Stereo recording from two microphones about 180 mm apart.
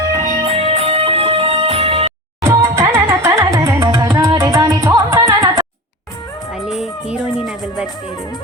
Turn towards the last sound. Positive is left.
turn(degrees=0)  # may be behind; listen again after turning